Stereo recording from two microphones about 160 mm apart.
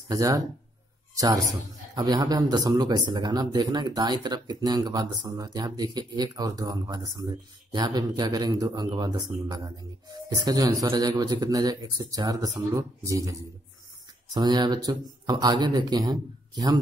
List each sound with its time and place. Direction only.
0.1 s a man's voice: 20° right (ahead or behind)